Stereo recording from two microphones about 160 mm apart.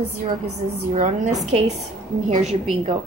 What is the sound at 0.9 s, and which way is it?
Speech, 45° right (ahead or behind).